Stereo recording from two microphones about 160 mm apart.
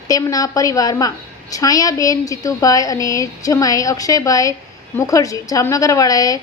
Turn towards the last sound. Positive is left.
turn(degrees=25)  # may be behind; listen again after turning